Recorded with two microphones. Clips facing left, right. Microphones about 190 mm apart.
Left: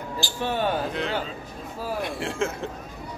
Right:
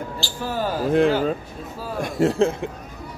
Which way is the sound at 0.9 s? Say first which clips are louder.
Right 11 dB; 50° right (ahead or behind).